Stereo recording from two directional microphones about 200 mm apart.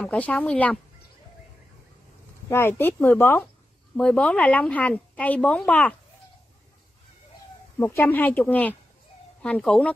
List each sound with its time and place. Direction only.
0.0 s speech: 5° left (ahead or behind)
2.5 s speech: 10° left (ahead or behind)
7.8 s speech: 10° left (ahead or behind)